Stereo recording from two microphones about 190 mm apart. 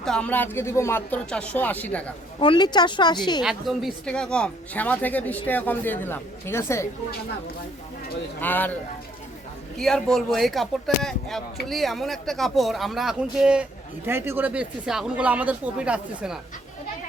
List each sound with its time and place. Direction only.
0.0 s speech: 5° left (ahead or behind)
2.4 s speech: 25° left (ahead or behind)
3.4 s speech: centre (ahead or behind); by 6.8 s 15° left (ahead or behind)
8.4 s speech: 10° left (ahead or behind)
9.7 s speech: centre (ahead or behind)